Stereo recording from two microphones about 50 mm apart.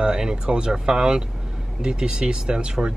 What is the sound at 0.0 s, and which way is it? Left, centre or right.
Speech, centre.